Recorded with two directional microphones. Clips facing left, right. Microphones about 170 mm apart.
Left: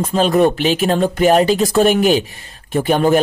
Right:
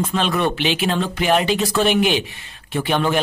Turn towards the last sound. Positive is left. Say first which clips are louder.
# left 6 dB
turn(degrees=40)  # may be behind; listen again after turning